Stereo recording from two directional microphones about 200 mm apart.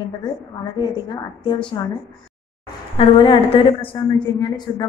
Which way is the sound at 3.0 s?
25° left (ahead or behind).